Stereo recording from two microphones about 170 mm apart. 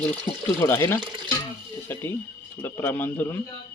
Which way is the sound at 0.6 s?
15° left (ahead or behind).